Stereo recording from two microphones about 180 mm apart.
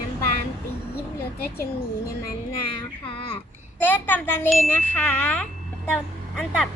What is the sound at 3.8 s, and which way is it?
Speech, 10° left (ahead or behind).